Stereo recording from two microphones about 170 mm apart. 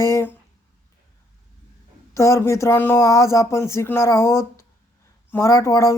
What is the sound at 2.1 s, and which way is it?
Speech, 20° left (ahead or behind).